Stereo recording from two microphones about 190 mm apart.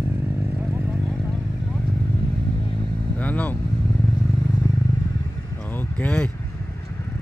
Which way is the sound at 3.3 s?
10° left (ahead or behind).